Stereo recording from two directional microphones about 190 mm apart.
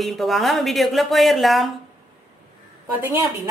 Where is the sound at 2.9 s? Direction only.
10° right (ahead or behind).